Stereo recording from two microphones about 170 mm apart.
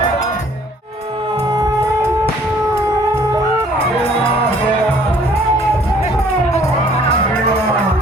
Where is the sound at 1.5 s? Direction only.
20° right (ahead or behind).